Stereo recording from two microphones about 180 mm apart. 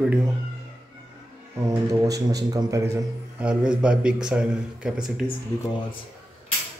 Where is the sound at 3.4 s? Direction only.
5° right (ahead or behind).